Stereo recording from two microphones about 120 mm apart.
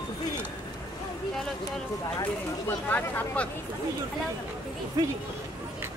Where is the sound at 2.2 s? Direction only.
15° left (ahead or behind).